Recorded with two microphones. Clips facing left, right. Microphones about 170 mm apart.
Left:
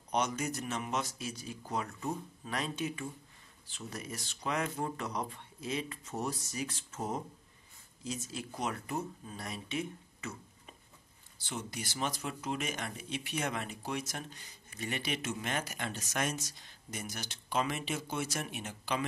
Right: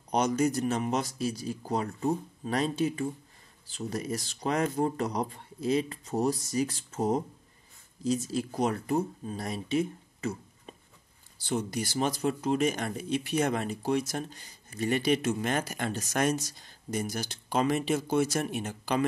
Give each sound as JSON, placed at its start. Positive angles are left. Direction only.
{"t": 0.1, "sound": "speech", "side_deg": -35}
{"t": 11.4, "sound": "speech", "side_deg": -40}